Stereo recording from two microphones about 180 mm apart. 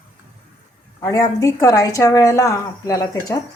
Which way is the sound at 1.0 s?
20° left (ahead or behind).